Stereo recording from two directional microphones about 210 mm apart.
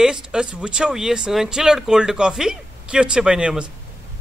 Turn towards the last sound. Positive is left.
turn(degrees=-5)  # may be behind; listen again after turning